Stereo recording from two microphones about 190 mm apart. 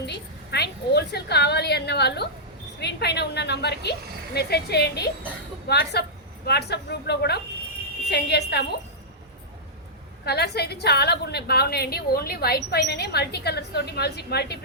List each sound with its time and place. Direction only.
0.0 s a woman's voice: 60° left (ahead or behind)
10.2 s a woman's voice: 60° left (ahead or behind)